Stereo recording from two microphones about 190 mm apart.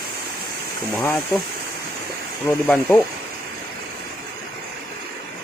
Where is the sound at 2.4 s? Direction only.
10° left (ahead or behind).